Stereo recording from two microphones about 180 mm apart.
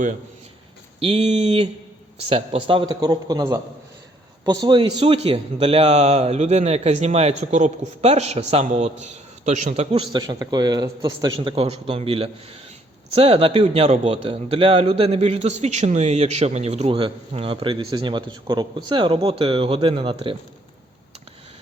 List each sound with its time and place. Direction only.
0.9 s a man's voice: 35° right (ahead or behind)